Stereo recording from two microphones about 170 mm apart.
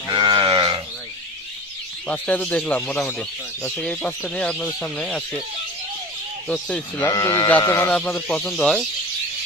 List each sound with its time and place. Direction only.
0.1 s sheep: 25° right (ahead or behind)
2.0 s speech: 10° left (ahead or behind)
6.5 s speech: 5° left (ahead or behind)
7.1 s speech: 25° left (ahead or behind); by 8.9 s 5° left (ahead or behind)